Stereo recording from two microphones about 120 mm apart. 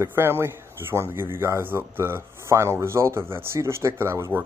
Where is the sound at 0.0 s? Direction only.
20° right (ahead or behind).